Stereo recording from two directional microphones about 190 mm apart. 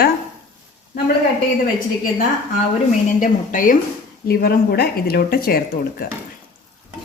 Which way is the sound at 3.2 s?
45° left (ahead or behind).